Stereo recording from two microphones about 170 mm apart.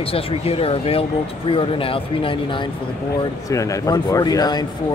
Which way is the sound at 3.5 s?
20° left (ahead or behind).